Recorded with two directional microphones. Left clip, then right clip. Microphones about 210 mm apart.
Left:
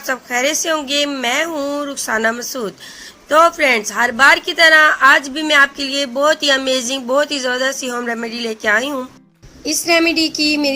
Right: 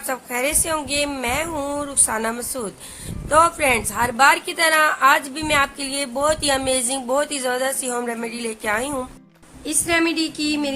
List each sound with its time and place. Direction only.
0.1 s a woman's voice: 10° left (ahead or behind)
9.6 s a woman's voice: 20° left (ahead or behind)